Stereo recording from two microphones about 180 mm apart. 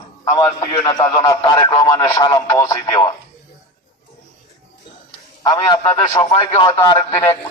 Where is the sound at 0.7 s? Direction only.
20° left (ahead or behind).